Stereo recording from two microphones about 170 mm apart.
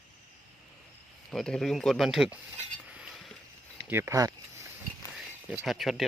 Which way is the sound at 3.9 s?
15° right (ahead or behind).